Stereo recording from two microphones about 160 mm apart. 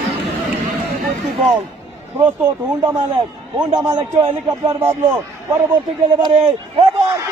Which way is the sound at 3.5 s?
25° right (ahead or behind).